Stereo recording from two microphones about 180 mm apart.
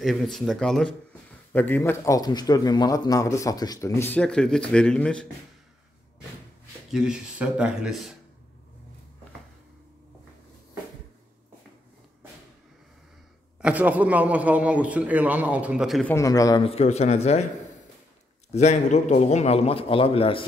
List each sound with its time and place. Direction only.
0.0 s speech: centre (ahead or behind)
6.9 s speech: 5° right (ahead or behind)
13.6 s a man's voice: 5° right (ahead or behind)
16.1 s a man's voice: 20° left (ahead or behind)
16.6 s a man's voice: 35° left (ahead or behind)
18.5 s a man's voice: 40° left (ahead or behind)